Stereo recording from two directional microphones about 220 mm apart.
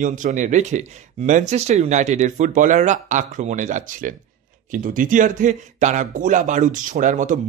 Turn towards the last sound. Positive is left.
turn(degrees=-35)  # may be behind; listen again after turning